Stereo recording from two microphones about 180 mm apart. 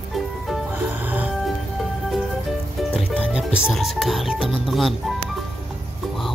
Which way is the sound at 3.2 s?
5° right (ahead or behind).